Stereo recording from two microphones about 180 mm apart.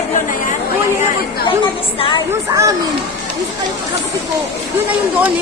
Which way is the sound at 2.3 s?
15° right (ahead or behind).